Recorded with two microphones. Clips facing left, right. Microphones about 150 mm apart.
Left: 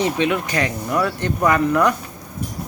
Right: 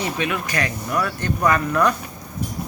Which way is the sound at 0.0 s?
25° left (ahead or behind).